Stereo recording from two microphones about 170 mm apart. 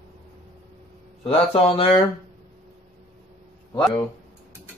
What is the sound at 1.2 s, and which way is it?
Speech, 35° left (ahead or behind).